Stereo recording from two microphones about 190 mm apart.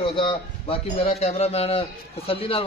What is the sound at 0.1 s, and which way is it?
A man's voice, 25° left (ahead or behind).